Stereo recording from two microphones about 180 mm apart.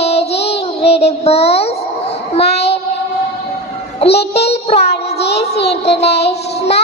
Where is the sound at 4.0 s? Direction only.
35° left (ahead or behind).